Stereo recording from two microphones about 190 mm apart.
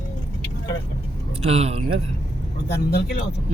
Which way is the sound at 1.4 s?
30° right (ahead or behind).